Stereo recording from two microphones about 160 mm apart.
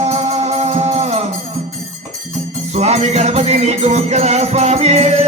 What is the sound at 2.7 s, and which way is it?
Music, 45° right (ahead or behind).